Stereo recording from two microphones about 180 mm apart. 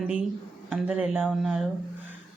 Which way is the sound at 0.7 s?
5° right (ahead or behind).